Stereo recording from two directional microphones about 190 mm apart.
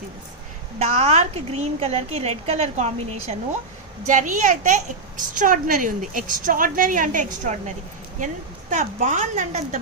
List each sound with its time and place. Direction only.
0.8 s a woman's voice: 35° right (ahead or behind)
8.7 s a woman's voice: 40° right (ahead or behind)